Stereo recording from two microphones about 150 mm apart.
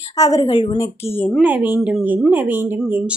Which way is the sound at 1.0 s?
10° left (ahead or behind).